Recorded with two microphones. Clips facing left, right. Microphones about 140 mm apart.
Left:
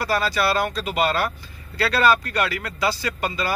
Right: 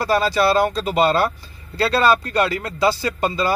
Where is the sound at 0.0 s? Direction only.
25° right (ahead or behind).